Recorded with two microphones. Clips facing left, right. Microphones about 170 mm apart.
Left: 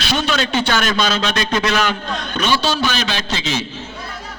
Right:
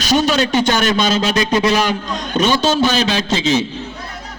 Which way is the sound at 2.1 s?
40° right (ahead or behind).